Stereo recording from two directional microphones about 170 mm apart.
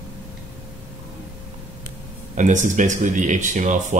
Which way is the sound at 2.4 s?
45° right (ahead or behind).